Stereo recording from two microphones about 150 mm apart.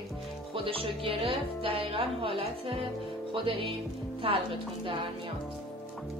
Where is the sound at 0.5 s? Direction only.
40° right (ahead or behind).